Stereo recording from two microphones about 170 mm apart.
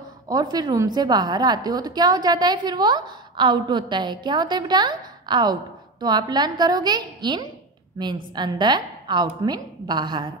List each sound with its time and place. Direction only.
0.3 s a woman's voice: 25° right (ahead or behind)